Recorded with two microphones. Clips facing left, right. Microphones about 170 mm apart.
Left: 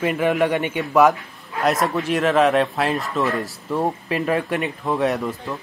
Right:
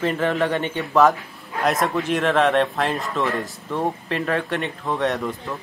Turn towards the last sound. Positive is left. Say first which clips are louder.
# left 2 dB
turn(degrees=5)  # may be behind; listen again after turning